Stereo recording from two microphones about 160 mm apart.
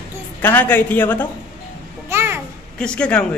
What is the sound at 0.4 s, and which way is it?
Speech, 10° left (ahead or behind).